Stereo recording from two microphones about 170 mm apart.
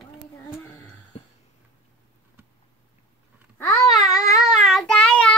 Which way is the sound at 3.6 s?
15° left (ahead or behind).